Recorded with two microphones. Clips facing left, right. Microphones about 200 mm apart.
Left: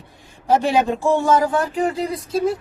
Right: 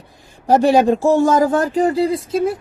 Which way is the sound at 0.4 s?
40° right (ahead or behind).